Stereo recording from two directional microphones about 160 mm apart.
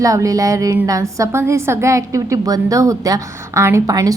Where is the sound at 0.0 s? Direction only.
20° right (ahead or behind).